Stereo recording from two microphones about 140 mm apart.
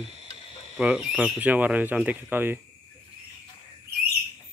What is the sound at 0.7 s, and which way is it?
Speech, 5° right (ahead or behind).